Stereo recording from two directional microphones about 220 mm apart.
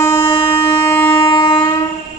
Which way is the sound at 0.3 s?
25° left (ahead or behind).